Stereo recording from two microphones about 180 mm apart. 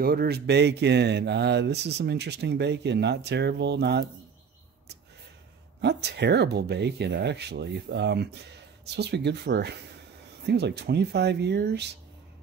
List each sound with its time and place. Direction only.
0.0 s speech: 60° right (ahead or behind)
5.8 s speech: 65° right (ahead or behind)